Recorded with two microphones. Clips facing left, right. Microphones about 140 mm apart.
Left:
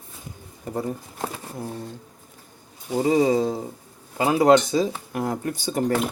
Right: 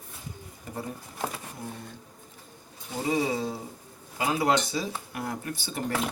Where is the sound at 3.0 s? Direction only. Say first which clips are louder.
Left 8 dB; 40° left (ahead or behind).